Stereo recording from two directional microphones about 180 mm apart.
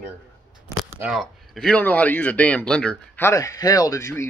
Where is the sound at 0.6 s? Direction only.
15° right (ahead or behind).